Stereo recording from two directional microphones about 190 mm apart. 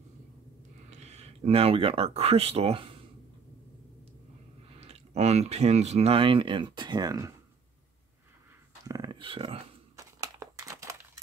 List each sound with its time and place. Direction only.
0.8 s speech: 35° right (ahead or behind)
4.7 s speech: 35° right (ahead or behind)
8.8 s a sound: 20° right (ahead or behind)
9.9 s crumpling: 20° right (ahead or behind)